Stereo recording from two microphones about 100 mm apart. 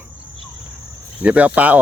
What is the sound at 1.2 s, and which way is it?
Speech, 15° right (ahead or behind).